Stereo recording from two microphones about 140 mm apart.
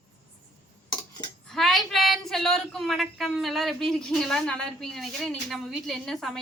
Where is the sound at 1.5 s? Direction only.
Centre (ahead or behind).